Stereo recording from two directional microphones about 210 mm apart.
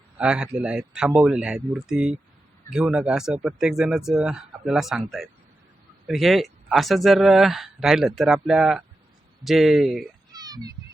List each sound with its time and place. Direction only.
0.2 s speech: 5° right (ahead or behind)
10.3 s telephone dialing: 20° right (ahead or behind)